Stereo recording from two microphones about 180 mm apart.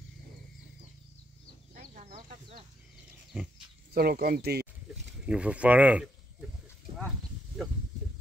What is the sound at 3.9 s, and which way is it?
Speech, 55° right (ahead or behind).